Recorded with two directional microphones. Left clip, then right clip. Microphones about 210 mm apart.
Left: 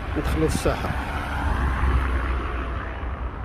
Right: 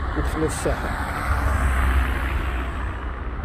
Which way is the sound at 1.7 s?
55° right (ahead or behind).